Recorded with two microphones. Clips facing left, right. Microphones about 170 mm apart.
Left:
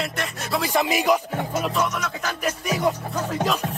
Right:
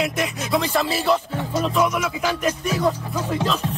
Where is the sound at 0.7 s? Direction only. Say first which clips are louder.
Left 3 dB; 15° left (ahead or behind).